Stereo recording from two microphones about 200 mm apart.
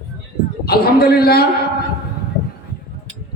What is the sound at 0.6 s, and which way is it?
Speech, 50° left (ahead or behind).